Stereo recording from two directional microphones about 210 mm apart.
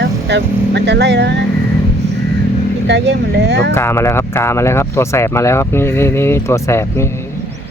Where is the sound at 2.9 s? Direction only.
55° right (ahead or behind).